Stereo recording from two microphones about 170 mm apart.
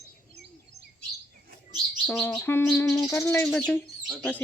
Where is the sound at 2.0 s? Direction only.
5° left (ahead or behind).